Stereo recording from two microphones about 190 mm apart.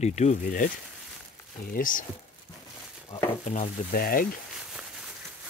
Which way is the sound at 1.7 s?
45° left (ahead or behind).